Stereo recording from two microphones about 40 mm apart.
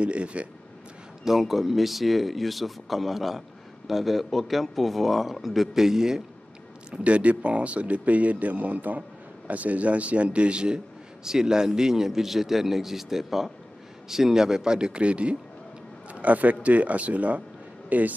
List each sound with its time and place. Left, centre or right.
0.0 s speech: right
1.2 s speech: centre
6.9 s a man's voice: right
16.1 s speech: right